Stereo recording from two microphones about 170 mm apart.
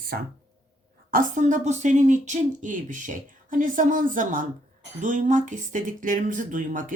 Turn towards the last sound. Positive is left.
turn(degrees=-50)  # may be behind; listen again after turning